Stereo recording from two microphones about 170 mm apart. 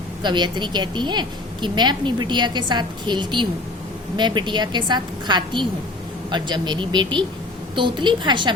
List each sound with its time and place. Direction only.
0.2 s a woman's voice: 25° right (ahead or behind)